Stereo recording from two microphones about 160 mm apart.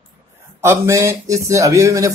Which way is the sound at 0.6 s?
15° right (ahead or behind).